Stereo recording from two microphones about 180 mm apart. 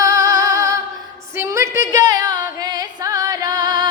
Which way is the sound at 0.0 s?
20° right (ahead or behind).